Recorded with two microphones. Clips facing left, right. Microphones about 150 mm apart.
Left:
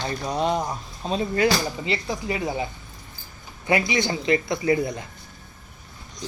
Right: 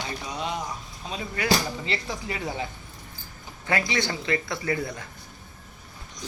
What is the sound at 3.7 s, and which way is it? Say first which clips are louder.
Speech: left 4 dB; 15° left (ahead or behind).